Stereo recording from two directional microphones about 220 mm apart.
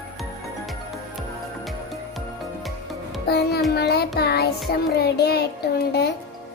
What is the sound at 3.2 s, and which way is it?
Music, 45° left (ahead or behind).